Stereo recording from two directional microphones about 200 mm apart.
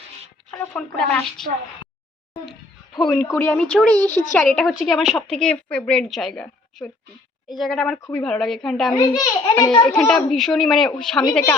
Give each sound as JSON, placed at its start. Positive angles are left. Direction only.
{"t": 0.5, "sound": "speech", "side_deg": 5}
{"t": 2.3, "sound": "a sound", "side_deg": 0}
{"t": 3.2, "sound": "speech", "side_deg": 10}
{"t": 4.4, "sound": "a woman's voice", "side_deg": 0}
{"t": 8.9, "sound": "a child's voice", "side_deg": 20}
{"t": 9.6, "sound": "a woman's voice", "side_deg": 5}
{"t": 9.9, "sound": "speech", "side_deg": 15}
{"t": 10.2, "sound": "a woman's voice", "side_deg": 0}